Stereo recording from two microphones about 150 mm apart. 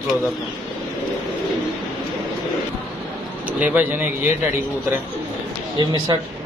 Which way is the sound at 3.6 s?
10° right (ahead or behind).